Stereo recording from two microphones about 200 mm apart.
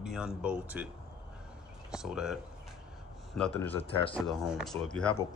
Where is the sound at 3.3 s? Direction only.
5° left (ahead or behind).